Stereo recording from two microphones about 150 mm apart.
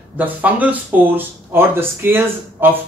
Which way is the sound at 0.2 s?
10° right (ahead or behind).